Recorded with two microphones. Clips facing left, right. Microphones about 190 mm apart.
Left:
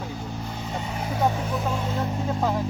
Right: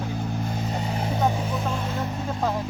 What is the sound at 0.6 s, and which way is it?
Vehicle, 35° right (ahead or behind).